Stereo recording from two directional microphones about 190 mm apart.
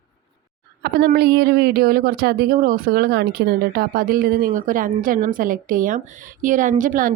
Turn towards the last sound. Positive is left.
turn(degrees=-45)  # may be behind; listen again after turning